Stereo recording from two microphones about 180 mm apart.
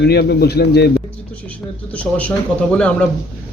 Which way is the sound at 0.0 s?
65° left (ahead or behind).